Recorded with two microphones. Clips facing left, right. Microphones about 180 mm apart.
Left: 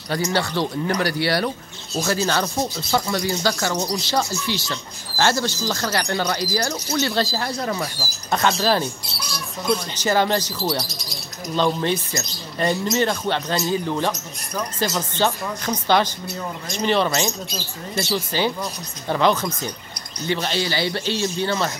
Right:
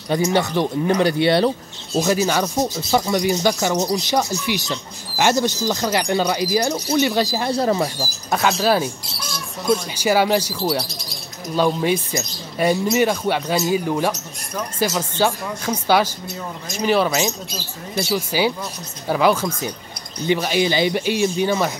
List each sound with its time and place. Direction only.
0.1 s speech: 20° right (ahead or behind)
7.5 s speech: 30° right (ahead or behind)
8.0 s speech: 5° right (ahead or behind)